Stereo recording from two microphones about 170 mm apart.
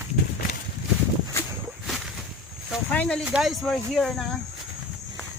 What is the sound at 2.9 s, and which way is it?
Speech, 5° left (ahead or behind).